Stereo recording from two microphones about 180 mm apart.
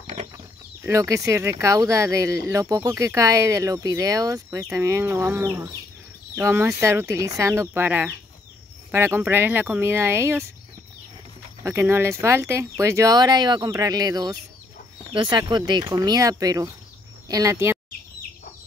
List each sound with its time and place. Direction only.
0.0 s a sound: 35° right (ahead or behind)
0.8 s speech: 15° right (ahead or behind)
11.6 s speech: 15° right (ahead or behind)